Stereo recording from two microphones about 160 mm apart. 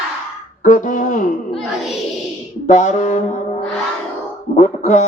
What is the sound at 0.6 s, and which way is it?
Speech, 50° left (ahead or behind).